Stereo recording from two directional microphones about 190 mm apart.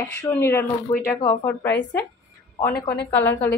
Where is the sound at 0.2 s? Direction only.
10° left (ahead or behind).